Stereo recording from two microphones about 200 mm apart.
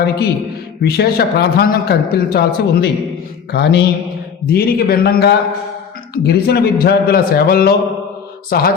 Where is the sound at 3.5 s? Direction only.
60° left (ahead or behind).